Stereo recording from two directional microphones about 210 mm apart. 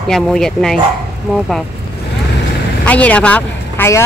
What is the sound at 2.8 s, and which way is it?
Speech, 5° left (ahead or behind).